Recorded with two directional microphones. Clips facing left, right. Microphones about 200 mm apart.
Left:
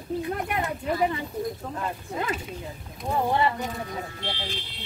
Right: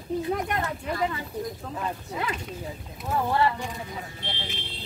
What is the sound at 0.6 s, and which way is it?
Speech, 20° left (ahead or behind).